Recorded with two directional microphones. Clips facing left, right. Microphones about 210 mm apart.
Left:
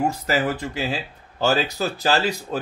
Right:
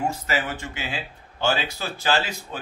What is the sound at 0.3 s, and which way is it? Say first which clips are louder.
A man's voice: left 5 dB; 40° left (ahead or behind).